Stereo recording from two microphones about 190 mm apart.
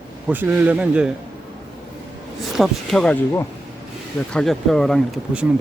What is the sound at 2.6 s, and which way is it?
Speech, 5° left (ahead or behind).